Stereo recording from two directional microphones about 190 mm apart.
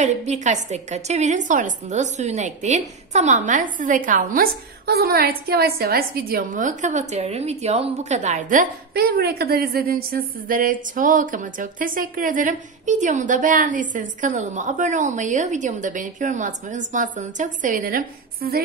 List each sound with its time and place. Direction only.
0.0 s a woman's voice: 35° right (ahead or behind)